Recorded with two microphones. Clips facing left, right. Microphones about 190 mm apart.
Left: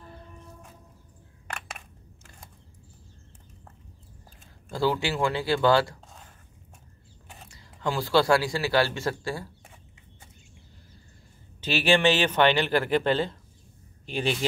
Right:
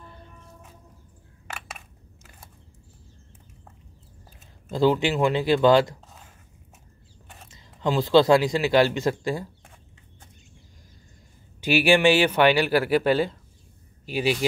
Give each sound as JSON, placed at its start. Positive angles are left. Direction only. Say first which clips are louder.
{"t": 4.6, "sound": "speech", "louder": "right 5 dB", "side_deg": -20}
{"t": 7.4, "sound": "speech", "louder": "right 4 dB", "side_deg": -20}
{"t": 11.6, "sound": "speech", "louder": "right 4 dB", "side_deg": -10}